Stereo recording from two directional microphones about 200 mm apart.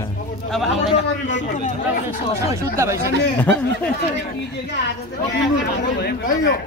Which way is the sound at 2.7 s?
15° right (ahead or behind).